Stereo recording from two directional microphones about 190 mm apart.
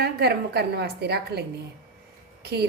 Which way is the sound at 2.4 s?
55° right (ahead or behind).